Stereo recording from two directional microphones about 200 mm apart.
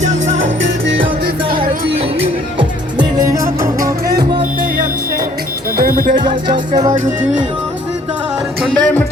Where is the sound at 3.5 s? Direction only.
45° right (ahead or behind).